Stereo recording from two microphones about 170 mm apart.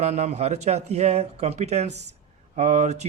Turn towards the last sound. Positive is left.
turn(degrees=-40)  # may be behind; listen again after turning